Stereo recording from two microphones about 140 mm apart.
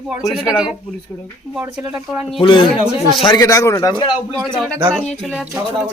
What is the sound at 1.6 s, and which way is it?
Speech, 15° right (ahead or behind).